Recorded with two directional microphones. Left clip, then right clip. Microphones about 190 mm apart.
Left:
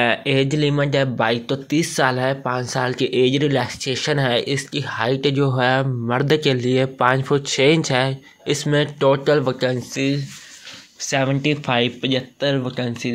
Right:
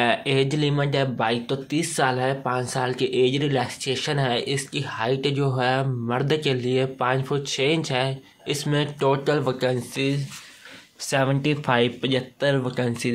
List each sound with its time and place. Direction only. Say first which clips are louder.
0.0 s speech: left 3 dB; 15° left (ahead or behind); by 13.1 s 5° right (ahead or behind)